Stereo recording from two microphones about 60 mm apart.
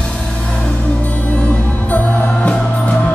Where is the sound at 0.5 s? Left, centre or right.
Left.